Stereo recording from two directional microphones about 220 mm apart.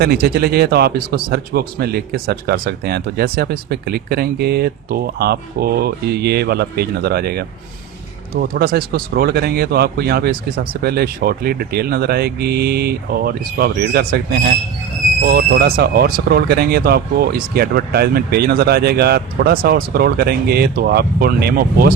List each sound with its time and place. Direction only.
0.0 s a man's voice: 45° right (ahead or behind)
15.3 s a man's voice: 45° right (ahead or behind)